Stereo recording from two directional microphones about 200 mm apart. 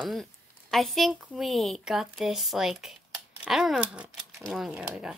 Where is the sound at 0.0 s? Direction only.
Centre (ahead or behind).